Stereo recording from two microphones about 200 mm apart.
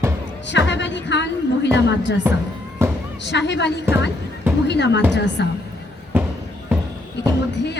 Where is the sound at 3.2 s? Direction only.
60° left (ahead or behind).